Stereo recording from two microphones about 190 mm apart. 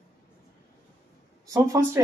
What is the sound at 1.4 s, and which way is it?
Speech, 15° right (ahead or behind).